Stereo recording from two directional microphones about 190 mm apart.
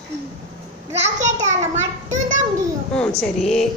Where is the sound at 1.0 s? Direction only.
40° right (ahead or behind).